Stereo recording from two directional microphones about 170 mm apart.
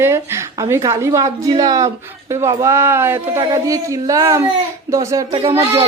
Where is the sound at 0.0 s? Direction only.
15° right (ahead or behind).